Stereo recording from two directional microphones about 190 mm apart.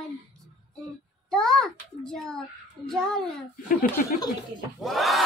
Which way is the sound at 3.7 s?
50° left (ahead or behind).